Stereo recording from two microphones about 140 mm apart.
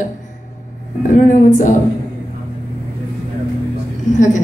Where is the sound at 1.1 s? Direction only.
65° left (ahead or behind).